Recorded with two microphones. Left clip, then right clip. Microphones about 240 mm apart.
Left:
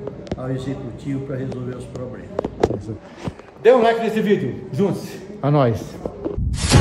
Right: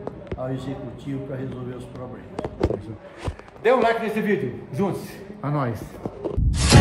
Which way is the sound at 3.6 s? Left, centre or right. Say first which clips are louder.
Left 5 dB; centre.